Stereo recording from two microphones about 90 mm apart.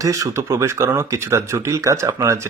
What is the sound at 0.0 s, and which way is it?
Speech, 40° right (ahead or behind).